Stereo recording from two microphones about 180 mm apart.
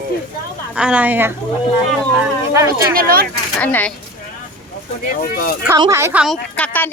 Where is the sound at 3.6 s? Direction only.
10° left (ahead or behind).